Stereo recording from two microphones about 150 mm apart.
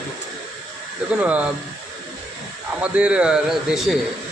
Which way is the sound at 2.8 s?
10° right (ahead or behind).